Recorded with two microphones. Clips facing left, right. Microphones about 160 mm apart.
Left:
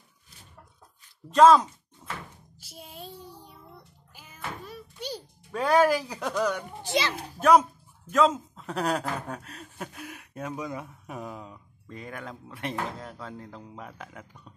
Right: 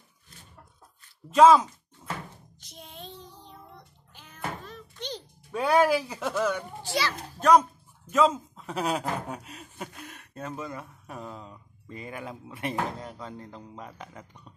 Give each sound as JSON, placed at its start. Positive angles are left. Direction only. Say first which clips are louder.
{"t": 1.3, "sound": "speech", "louder": "even", "side_deg": -5}
{"t": 2.6, "sound": "child singing", "louder": "left 2 dB", "side_deg": 5}
{"t": 4.6, "sound": "a sound", "louder": "left 1 dB", "side_deg": 10}
{"t": 5.5, "sound": "speech", "louder": "even", "side_deg": -5}
{"t": 6.8, "sound": "a child's voice", "louder": "left 5 dB", "side_deg": 20}
{"t": 7.2, "sound": "speech", "louder": "even", "side_deg": 5}